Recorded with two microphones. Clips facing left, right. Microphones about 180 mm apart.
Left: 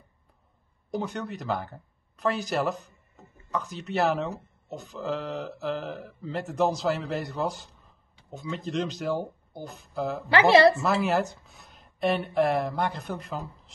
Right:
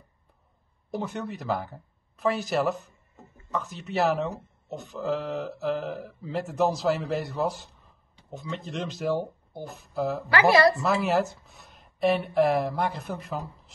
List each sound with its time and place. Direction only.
0.9 s speech: 5° right (ahead or behind)
10.3 s speech: 25° left (ahead or behind)
10.8 s speech: centre (ahead or behind)